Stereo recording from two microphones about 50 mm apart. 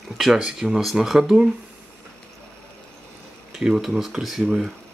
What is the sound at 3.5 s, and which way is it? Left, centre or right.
Speech, centre.